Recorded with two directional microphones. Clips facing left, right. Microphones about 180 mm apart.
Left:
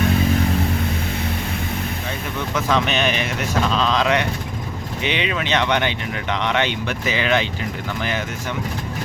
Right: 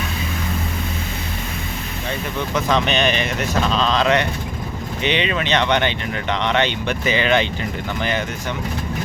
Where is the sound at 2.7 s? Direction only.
5° left (ahead or behind).